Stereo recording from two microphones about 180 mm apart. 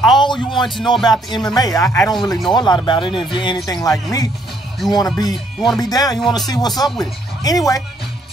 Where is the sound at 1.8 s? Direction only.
5° left (ahead or behind).